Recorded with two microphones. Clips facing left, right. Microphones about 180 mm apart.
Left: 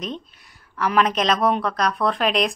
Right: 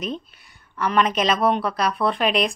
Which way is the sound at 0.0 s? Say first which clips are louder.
Right 2 dB; 5° right (ahead or behind).